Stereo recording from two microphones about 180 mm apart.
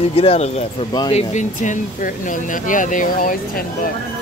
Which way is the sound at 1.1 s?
40° left (ahead or behind).